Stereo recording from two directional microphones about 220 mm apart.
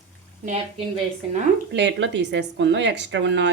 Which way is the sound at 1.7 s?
55° right (ahead or behind).